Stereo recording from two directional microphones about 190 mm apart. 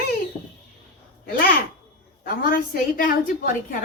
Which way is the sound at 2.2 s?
50° left (ahead or behind).